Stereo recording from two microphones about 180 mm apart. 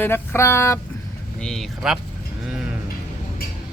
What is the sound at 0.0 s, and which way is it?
Speech, 15° left (ahead or behind).